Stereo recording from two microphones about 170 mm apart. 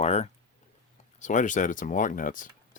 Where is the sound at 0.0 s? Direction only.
40° left (ahead or behind).